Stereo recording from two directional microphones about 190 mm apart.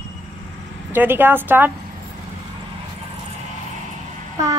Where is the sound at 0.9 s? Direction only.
10° right (ahead or behind).